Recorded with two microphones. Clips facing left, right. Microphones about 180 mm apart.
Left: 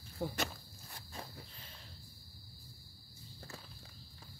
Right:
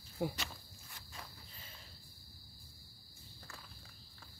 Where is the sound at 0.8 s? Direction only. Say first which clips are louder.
Left 5 dB; 35° left (ahead or behind).